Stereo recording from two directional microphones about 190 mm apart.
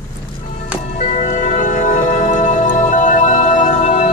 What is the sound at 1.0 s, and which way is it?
Music, 40° left (ahead or behind).